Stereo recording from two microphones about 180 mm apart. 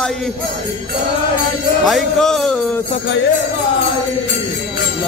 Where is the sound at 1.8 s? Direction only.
Centre (ahead or behind).